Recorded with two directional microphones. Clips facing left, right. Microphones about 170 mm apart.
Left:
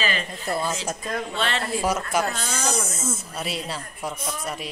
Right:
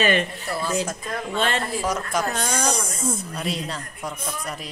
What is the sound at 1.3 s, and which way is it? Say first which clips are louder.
Speech: right 5 dB; 45° right (ahead or behind).